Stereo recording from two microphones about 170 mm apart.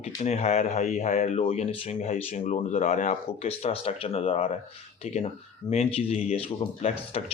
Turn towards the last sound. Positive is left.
turn(degrees=35)  # may be behind; listen again after turning